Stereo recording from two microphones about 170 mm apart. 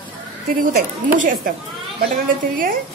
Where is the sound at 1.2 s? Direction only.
50° right (ahead or behind).